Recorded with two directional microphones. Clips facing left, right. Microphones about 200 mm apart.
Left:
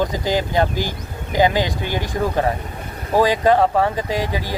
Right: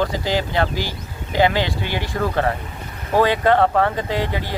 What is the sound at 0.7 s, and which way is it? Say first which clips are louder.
Speech: left 2 dB; 50° left (ahead or behind).